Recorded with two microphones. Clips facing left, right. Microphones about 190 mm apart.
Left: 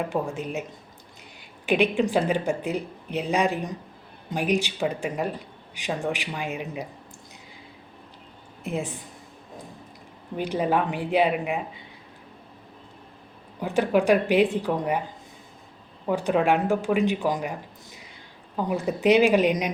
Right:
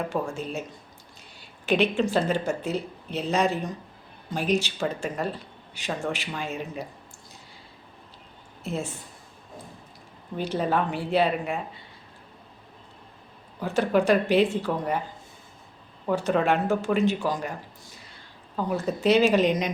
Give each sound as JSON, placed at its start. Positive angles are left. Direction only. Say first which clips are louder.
{"t": 0.1, "sound": "speech", "louder": "left 1 dB", "side_deg": 15}
{"t": 8.6, "sound": "speech", "louder": "left 2 dB", "side_deg": 15}
{"t": 10.3, "sound": "speech", "louder": "left 2 dB", "side_deg": 15}
{"t": 13.6, "sound": "speech", "louder": "left 1 dB", "side_deg": 15}
{"t": 16.0, "sound": "speech", "louder": "left 1 dB", "side_deg": 10}
{"t": 18.5, "sound": "speech", "louder": "left 1 dB", "side_deg": 15}